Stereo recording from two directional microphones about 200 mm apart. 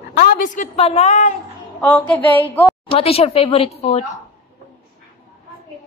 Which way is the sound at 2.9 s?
30° left (ahead or behind).